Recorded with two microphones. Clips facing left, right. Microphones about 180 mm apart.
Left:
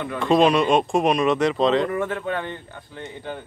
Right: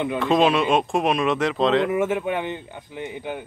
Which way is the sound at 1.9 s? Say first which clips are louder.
Right 3 dB; 15° right (ahead or behind).